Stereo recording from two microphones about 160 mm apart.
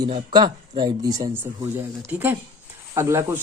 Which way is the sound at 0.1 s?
30° right (ahead or behind).